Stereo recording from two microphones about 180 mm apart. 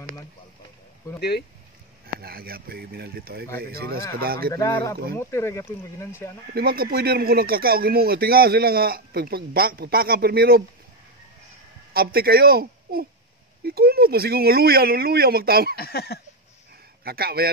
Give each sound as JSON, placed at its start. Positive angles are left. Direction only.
{"t": 2.1, "sound": "speech", "side_deg": -55}
{"t": 4.6, "sound": "speech", "side_deg": 20}
{"t": 6.5, "sound": "speech", "side_deg": -55}
{"t": 11.9, "sound": "speech", "side_deg": -55}
{"t": 15.7, "sound": "a sound", "side_deg": 60}
{"t": 17.0, "sound": "speech", "side_deg": -60}